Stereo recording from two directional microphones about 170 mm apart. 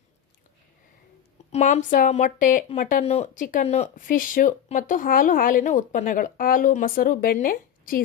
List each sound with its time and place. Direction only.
1.5 s speech: 45° left (ahead or behind)